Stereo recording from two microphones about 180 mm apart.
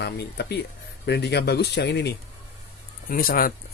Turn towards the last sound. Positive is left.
turn(degrees=55)  # may be behind; listen again after turning